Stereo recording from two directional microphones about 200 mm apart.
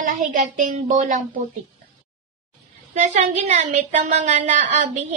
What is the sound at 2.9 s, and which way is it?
A woman's voice, 35° right (ahead or behind).